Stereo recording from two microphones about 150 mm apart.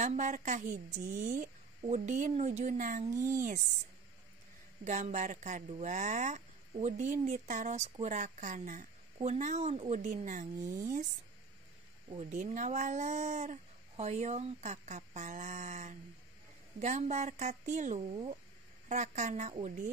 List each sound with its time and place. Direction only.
0.0 s a woman's voice: 55° right (ahead or behind)
4.8 s a woman's voice: 50° right (ahead or behind)
12.3 s speech: 55° right (ahead or behind)
18.1 s speech: 40° right (ahead or behind)
18.9 s speech: 50° right (ahead or behind)